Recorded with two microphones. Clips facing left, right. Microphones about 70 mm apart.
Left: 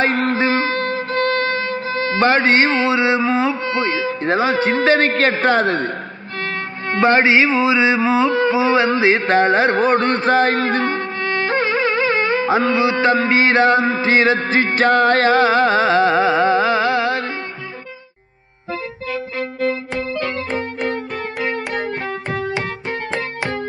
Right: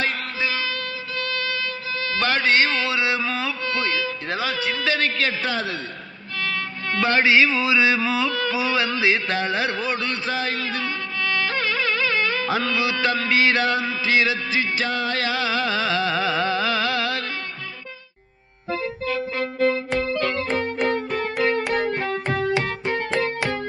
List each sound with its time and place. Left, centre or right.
0.0 s music: left
6.4 s music: left
19.9 s music: left